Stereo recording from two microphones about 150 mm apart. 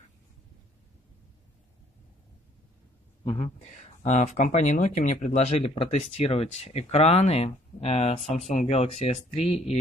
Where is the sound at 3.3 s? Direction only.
45° left (ahead or behind).